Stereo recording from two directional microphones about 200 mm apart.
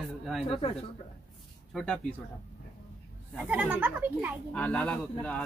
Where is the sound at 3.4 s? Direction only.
5° right (ahead or behind).